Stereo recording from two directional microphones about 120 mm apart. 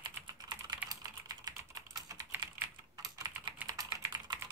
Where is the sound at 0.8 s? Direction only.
35° right (ahead or behind).